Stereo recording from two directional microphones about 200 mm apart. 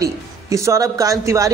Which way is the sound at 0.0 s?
15° right (ahead or behind).